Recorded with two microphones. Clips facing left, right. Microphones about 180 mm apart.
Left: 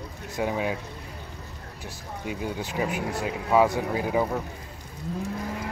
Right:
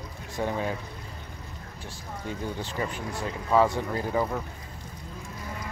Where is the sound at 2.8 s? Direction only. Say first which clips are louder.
Left 6 dB; 70° left (ahead or behind).